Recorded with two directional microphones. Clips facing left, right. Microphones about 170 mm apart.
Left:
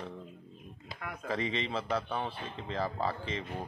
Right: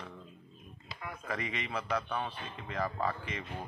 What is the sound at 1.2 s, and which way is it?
Speech, 30° left (ahead or behind).